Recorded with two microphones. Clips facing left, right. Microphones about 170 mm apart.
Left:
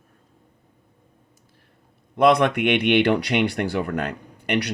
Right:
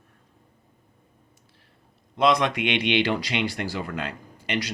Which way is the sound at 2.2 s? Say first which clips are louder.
Left 4 dB; 55° left (ahead or behind).